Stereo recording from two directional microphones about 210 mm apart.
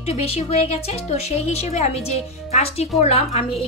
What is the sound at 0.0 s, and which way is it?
A woman's voice, 30° left (ahead or behind).